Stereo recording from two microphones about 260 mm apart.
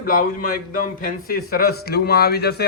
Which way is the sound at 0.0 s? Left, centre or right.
Left.